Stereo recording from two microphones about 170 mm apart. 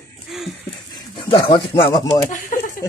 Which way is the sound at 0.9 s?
30° left (ahead or behind).